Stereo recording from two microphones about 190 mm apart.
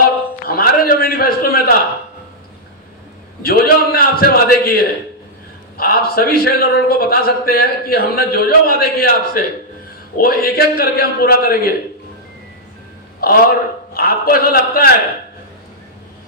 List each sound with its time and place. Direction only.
0.4 s a sound: 50° left (ahead or behind)
3.4 s a man's voice: 50° left (ahead or behind)
13.2 s a man's voice: 50° left (ahead or behind)